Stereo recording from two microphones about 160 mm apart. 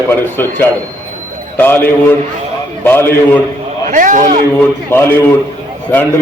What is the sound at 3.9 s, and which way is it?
Speech, 55° right (ahead or behind).